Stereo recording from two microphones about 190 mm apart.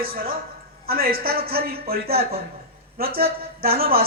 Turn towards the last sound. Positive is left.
turn(degrees=-50)  # may be behind; listen again after turning